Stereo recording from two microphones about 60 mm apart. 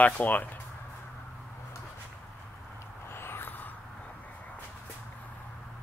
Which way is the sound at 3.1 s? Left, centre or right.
Left.